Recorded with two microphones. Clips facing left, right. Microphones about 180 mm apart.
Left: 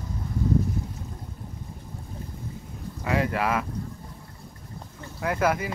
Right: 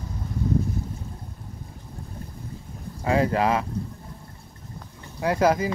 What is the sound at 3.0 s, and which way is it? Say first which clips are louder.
Speech: right 4 dB; 30° right (ahead or behind).